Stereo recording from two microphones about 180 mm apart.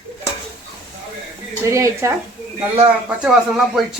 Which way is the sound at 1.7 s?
15° right (ahead or behind).